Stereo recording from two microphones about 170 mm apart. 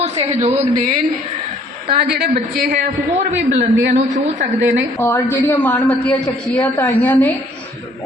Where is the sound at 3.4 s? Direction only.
90° right.